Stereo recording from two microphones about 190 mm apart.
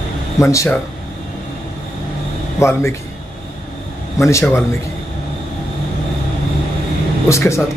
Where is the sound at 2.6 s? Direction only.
15° left (ahead or behind).